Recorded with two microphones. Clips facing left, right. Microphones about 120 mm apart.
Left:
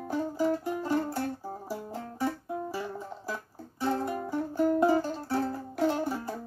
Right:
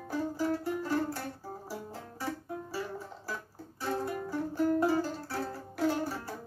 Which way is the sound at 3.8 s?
20° left (ahead or behind).